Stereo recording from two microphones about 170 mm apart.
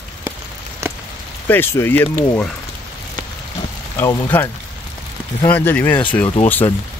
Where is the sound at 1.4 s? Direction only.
10° left (ahead or behind).